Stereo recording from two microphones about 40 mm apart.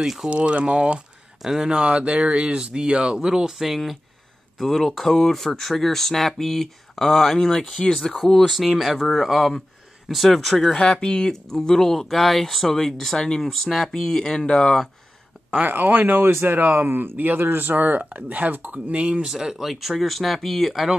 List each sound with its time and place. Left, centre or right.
0.0 s speech: centre
0.3 s speech: right
1.4 s speech: centre
1.7 s speech: right
2.1 s speech: centre
4.6 s speech: centre
8.5 s speech: centre
10.7 s speech: centre
11.5 s speech: centre
15.6 s speech: right
17.6 s speech: right
19.2 s speech: centre
19.7 s speech: centre